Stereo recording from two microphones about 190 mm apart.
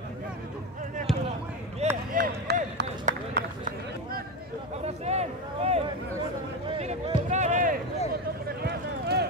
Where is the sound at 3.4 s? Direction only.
40° right (ahead or behind).